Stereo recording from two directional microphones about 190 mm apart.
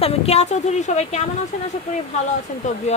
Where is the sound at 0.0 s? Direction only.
35° left (ahead or behind).